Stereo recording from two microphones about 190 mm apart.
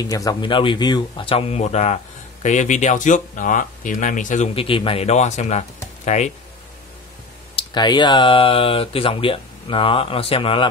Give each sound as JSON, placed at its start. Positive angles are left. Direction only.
{"t": 0.0, "sound": "speech", "side_deg": 20}
{"t": 4.6, "sound": "speech", "side_deg": 30}
{"t": 7.5, "sound": "speech", "side_deg": 25}